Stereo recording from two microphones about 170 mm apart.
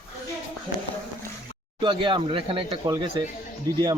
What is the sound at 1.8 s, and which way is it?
Speech, 30° right (ahead or behind).